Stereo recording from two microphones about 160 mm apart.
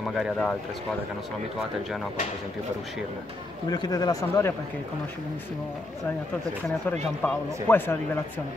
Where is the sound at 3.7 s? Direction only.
25° left (ahead or behind).